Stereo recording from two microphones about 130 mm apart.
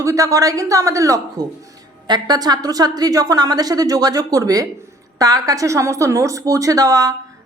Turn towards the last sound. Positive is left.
turn(degrees=-30)  # may be behind; listen again after turning